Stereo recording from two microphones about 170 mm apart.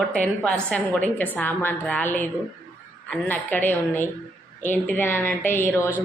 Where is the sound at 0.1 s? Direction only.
5° left (ahead or behind).